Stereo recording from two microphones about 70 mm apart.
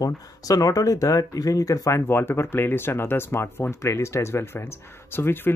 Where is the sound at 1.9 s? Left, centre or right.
Left.